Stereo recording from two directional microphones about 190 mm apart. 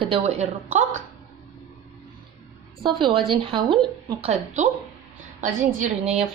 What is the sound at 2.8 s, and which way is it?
A woman's voice, 25° right (ahead or behind).